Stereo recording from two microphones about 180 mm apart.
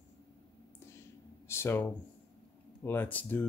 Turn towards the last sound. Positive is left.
turn(degrees=10)  # may be behind; listen again after turning